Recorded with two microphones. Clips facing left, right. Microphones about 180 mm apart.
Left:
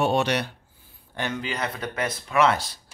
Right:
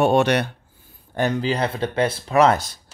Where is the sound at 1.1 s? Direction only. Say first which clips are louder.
Right 8 dB; 40° right (ahead or behind).